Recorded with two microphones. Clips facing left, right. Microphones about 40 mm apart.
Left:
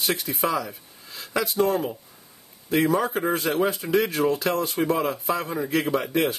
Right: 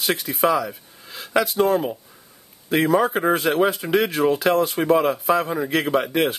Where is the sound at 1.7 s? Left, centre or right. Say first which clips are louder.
Right 4 dB; centre.